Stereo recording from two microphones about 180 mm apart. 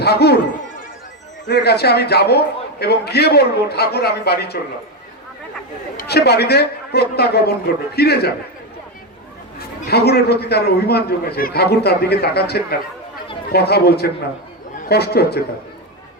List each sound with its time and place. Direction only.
0.0 s a man's voice: 65° left (ahead or behind)
1.5 s a man's voice: 65° left (ahead or behind)
6.0 s a man's voice: 65° left (ahead or behind)
9.9 s a man's voice: 65° left (ahead or behind)